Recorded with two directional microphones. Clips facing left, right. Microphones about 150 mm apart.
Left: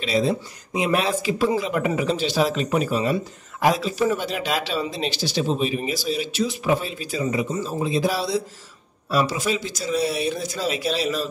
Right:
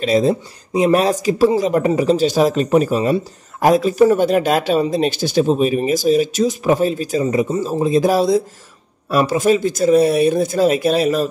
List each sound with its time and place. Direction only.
0.0 s speech: 45° right (ahead or behind)